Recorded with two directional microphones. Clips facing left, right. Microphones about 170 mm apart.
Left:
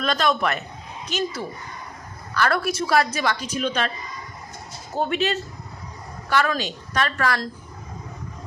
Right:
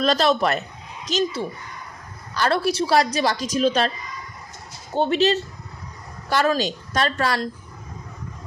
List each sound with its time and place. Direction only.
0.0 s a man's voice: 35° right (ahead or behind)
4.9 s a man's voice: 30° right (ahead or behind)